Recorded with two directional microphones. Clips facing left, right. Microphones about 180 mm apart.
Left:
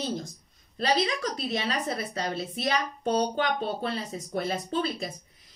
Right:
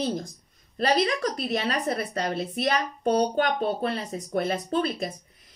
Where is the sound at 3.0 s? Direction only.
55° right (ahead or behind).